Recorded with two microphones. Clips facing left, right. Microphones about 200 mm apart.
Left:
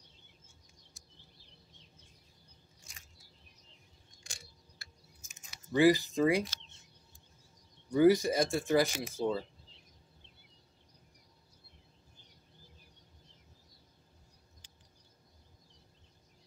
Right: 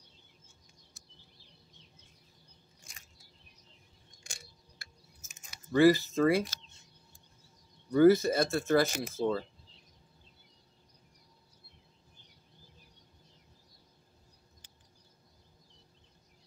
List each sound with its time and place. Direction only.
4.2 s a sound: 50° right (ahead or behind)
5.7 s speech: 15° left (ahead or behind)
7.9 s speech: 15° left (ahead or behind)